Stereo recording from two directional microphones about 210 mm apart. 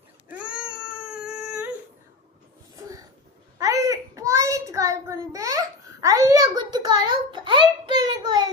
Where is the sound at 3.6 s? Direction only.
15° right (ahead or behind).